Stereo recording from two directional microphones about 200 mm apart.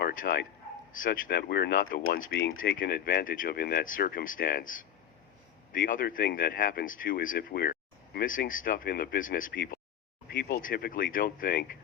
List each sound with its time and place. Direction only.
0.0 s speech: 45° left (ahead or behind)